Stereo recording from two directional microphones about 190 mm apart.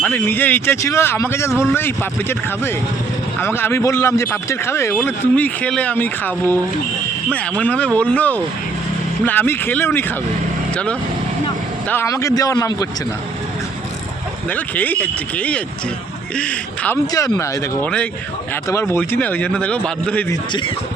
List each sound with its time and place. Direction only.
0.0 s a man's voice: 10° left (ahead or behind)
3.4 s a man's voice: 10° left (ahead or behind)
11.9 s a man's voice: 15° left (ahead or behind)
14.5 s a man's voice: 10° left (ahead or behind)